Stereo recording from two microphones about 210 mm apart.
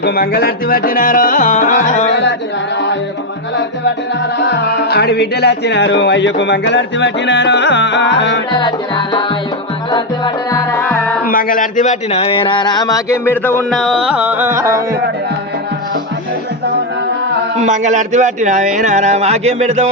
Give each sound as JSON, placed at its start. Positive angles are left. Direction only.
{"t": 0.0, "sound": "music", "side_deg": 45}
{"t": 4.4, "sound": "speech", "side_deg": 55}
{"t": 8.5, "sound": "music", "side_deg": 20}
{"t": 11.3, "sound": "speech", "side_deg": 40}
{"t": 17.6, "sound": "speech", "side_deg": -35}